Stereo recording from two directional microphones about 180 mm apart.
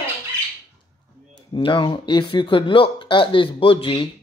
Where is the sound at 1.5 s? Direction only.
30° left (ahead or behind).